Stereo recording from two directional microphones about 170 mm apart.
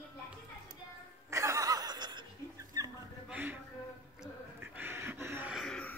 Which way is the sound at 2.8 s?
20° right (ahead or behind).